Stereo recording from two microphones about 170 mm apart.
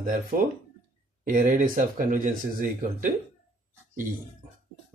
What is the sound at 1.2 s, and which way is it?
A man's voice, 50° right (ahead or behind).